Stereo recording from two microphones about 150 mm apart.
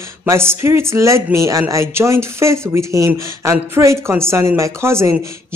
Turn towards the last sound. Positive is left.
turn(degrees=-15)  # may be behind; listen again after turning